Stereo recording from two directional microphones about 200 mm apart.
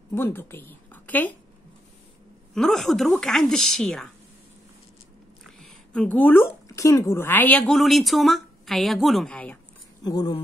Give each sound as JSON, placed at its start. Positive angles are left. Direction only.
{"t": 0.1, "sound": "a woman's voice", "side_deg": 10}
{"t": 2.5, "sound": "a woman's voice", "side_deg": 0}
{"t": 5.4, "sound": "speech", "side_deg": 5}
{"t": 10.0, "sound": "speech", "side_deg": 20}